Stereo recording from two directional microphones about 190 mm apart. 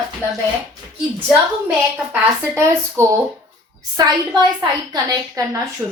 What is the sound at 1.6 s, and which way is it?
A woman's voice, 10° right (ahead or behind).